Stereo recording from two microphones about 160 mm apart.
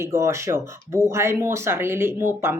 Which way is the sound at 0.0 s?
15° right (ahead or behind).